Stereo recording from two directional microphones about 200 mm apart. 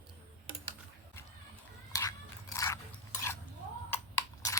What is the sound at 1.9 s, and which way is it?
Biting, 15° left (ahead or behind).